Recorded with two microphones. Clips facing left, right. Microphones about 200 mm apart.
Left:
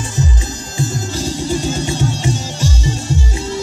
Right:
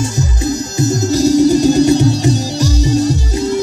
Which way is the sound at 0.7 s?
40° right (ahead or behind).